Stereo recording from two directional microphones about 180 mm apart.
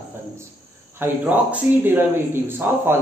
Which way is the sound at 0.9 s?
10° right (ahead or behind).